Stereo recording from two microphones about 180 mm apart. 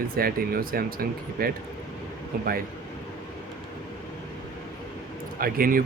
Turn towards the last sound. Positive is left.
turn(degrees=-50)  # may be behind; listen again after turning